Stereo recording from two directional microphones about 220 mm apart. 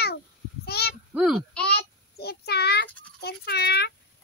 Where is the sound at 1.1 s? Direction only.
Centre (ahead or behind).